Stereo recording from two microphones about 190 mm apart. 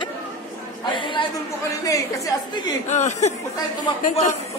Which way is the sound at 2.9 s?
35° left (ahead or behind).